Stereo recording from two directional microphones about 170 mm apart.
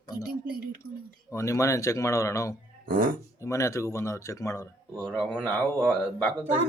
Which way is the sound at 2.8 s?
55° right (ahead or behind).